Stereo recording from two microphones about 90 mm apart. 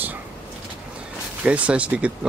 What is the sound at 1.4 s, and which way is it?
Speech, 15° right (ahead or behind).